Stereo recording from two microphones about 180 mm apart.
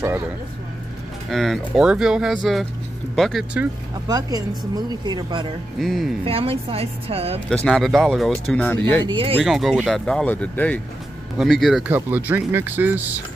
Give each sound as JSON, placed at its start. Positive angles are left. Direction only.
{"t": 1.3, "sound": "speech", "side_deg": 0}
{"t": 4.1, "sound": "speech", "side_deg": -20}
{"t": 5.8, "sound": "speech", "side_deg": 0}
{"t": 6.2, "sound": "a woman's voice", "side_deg": -30}
{"t": 7.4, "sound": "speech", "side_deg": 5}
{"t": 9.0, "sound": "speech", "side_deg": -30}
{"t": 9.4, "sound": "speech", "side_deg": 0}